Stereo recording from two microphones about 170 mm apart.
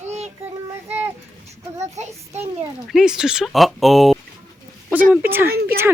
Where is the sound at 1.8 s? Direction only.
40° right (ahead or behind).